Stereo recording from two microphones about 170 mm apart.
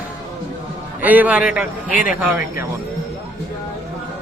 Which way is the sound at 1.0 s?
10° right (ahead or behind).